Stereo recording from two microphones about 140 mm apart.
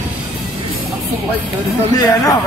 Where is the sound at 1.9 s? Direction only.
25° left (ahead or behind).